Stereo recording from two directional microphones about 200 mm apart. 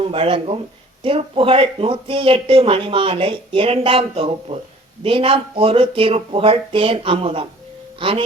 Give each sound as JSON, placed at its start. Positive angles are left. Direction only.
{"t": 0.0, "sound": "speech", "side_deg": -25}